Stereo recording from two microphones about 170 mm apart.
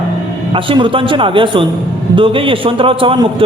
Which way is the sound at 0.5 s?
30° right (ahead or behind).